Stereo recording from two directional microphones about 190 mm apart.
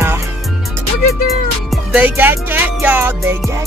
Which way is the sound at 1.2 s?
5° right (ahead or behind).